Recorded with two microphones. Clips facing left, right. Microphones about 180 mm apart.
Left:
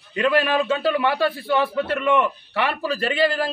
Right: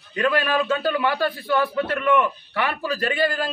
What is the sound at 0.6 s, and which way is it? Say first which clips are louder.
Speech: left 1 dB; 10° left (ahead or behind).